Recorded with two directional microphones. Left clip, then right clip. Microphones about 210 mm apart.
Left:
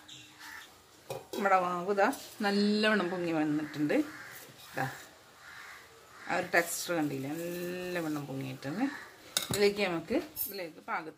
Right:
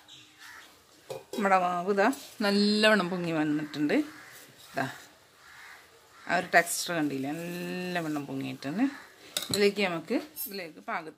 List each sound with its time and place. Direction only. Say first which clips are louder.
1.4 s speech: right 3 dB; 50° right (ahead or behind)
6.2 s speech: right 5 dB; 50° right (ahead or behind)